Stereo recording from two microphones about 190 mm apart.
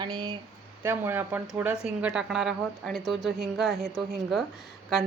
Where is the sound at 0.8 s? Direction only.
10° right (ahead or behind).